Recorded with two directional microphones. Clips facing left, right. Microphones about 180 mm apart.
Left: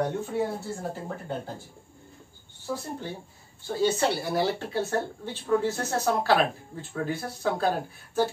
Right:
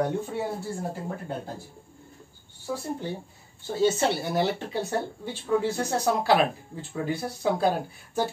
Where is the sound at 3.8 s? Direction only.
20° right (ahead or behind).